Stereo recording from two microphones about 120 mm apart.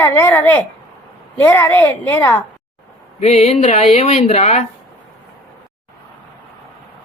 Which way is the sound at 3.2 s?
65° left (ahead or behind).